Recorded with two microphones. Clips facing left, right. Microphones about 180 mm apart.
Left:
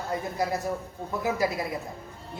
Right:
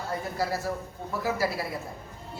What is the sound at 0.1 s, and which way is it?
A woman's voice, 20° left (ahead or behind).